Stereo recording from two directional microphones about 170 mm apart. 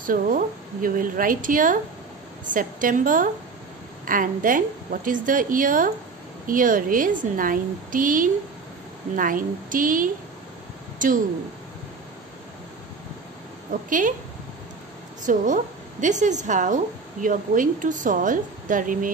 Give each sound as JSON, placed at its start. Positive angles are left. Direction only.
{"t": 0.0, "sound": "a woman's voice", "side_deg": -55}
{"t": 13.8, "sound": "a woman's voice", "side_deg": -50}
{"t": 15.2, "sound": "a woman's voice", "side_deg": -45}